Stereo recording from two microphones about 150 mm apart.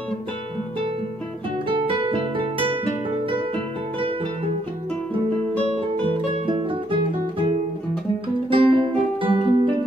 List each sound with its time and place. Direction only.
1.7 s music: 35° right (ahead or behind)
5.6 s music: 40° right (ahead or behind)